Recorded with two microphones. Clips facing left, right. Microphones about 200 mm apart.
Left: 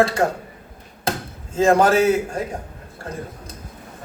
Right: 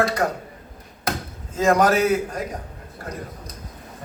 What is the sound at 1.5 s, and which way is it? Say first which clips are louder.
A man's voice: left 2 dB; 30° left (ahead or behind).